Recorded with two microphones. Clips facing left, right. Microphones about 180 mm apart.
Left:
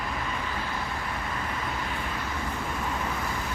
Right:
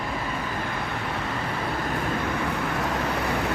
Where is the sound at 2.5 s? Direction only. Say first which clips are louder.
Right 5 dB; 75° right (ahead or behind).